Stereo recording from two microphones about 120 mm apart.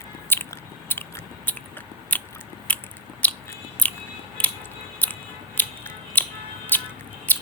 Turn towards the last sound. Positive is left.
turn(degrees=15)  # may be behind; listen again after turning